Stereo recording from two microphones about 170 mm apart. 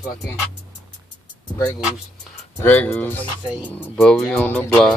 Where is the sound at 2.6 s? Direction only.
10° left (ahead or behind).